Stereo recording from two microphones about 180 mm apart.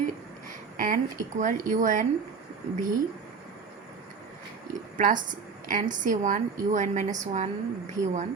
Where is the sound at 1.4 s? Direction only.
45° right (ahead or behind).